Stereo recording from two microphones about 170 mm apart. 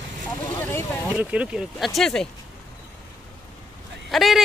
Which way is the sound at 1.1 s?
5° right (ahead or behind).